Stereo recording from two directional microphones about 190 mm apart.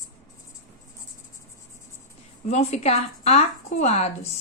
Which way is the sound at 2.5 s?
35° left (ahead or behind).